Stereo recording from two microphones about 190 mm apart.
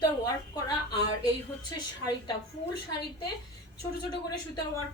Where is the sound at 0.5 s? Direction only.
20° left (ahead or behind).